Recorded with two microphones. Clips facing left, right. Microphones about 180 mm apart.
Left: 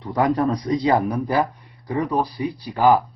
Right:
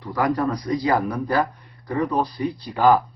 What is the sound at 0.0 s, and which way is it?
Speech, 20° left (ahead or behind).